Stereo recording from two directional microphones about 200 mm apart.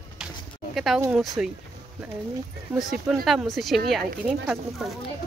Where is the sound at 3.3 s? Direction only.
Centre (ahead or behind).